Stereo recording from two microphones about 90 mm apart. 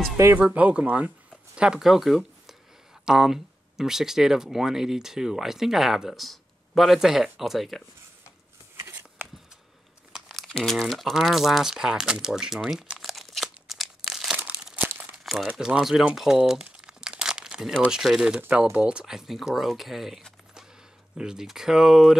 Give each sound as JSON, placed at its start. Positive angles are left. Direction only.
{"t": 0.4, "sound": "speech", "side_deg": -15}
{"t": 10.1, "sound": "crumpling", "side_deg": 0}
{"t": 10.5, "sound": "speech", "side_deg": 5}
{"t": 14.4, "sound": "crumpling", "side_deg": -15}
{"t": 15.4, "sound": "speech", "side_deg": -10}
{"t": 16.2, "sound": "crumpling", "side_deg": -5}
{"t": 18.8, "sound": "speech", "side_deg": -10}